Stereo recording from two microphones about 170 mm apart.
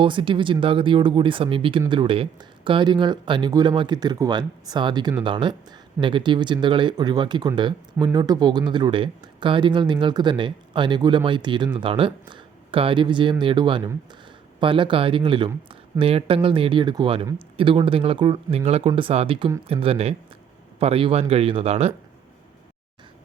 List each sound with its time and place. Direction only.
0.0 s speech: 30° right (ahead or behind)